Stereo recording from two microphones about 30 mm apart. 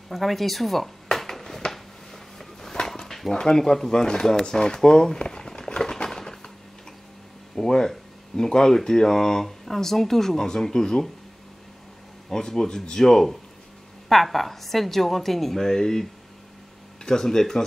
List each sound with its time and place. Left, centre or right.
0.1 s speech: centre
1.1 s a sound: centre
3.3 s speech: left
5.8 s a sound: left
7.5 s speech: centre
12.3 s speech: centre
12.6 s speech: left
12.9 s speech: centre